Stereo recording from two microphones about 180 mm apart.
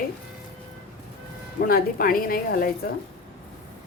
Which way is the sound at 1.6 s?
55° left (ahead or behind).